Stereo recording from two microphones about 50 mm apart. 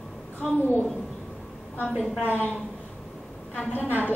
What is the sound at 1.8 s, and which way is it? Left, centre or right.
Speech, centre.